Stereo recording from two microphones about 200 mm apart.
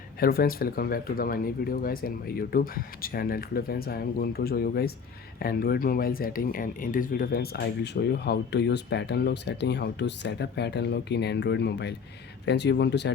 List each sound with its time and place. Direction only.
0.2 s speech: 50° left (ahead or behind)